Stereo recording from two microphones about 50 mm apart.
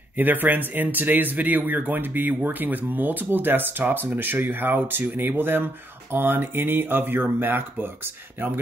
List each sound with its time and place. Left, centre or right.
0.2 s speech: right